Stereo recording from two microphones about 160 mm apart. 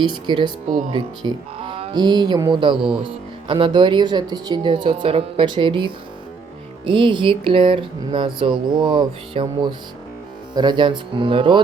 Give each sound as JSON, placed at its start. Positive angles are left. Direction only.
{"t": 0.1, "sound": "speech", "side_deg": -30}
{"t": 3.4, "sound": "music", "side_deg": -30}
{"t": 10.5, "sound": "speech", "side_deg": -30}